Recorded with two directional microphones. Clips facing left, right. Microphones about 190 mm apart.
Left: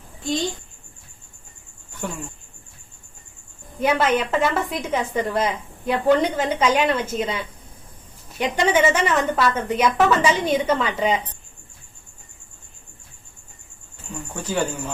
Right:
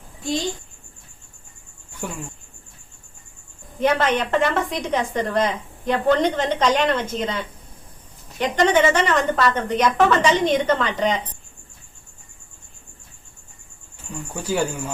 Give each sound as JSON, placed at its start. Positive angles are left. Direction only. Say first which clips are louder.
{"t": 2.0, "sound": "speech", "louder": "left 1 dB", "side_deg": -10}
{"t": 3.8, "sound": "a woman's voice", "louder": "even", "side_deg": 5}
{"t": 14.4, "sound": "speech", "louder": "right 1 dB", "side_deg": -10}